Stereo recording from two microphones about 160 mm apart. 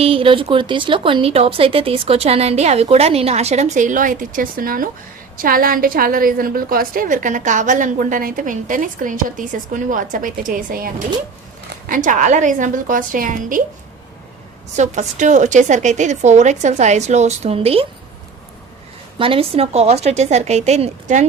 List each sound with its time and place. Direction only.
0.0 s a woman's voice: 35° right (ahead or behind); by 13.6 s 55° right (ahead or behind)
14.8 s a woman's voice: 50° right (ahead or behind)
19.2 s a woman's voice: 35° right (ahead or behind)